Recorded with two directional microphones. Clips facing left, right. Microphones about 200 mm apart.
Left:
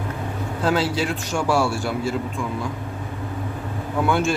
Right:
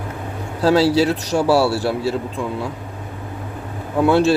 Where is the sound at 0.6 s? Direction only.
35° right (ahead or behind).